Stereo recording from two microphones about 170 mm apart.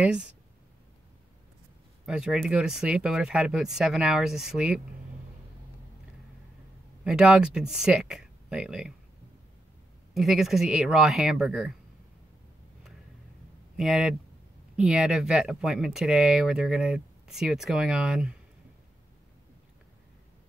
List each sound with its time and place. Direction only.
0.0 s speech: 5° right (ahead or behind)
2.0 s speech: 5° right (ahead or behind)
7.1 s speech: 5° right (ahead or behind)
10.1 s speech: centre (ahead or behind)
13.7 s speech: 5° right (ahead or behind)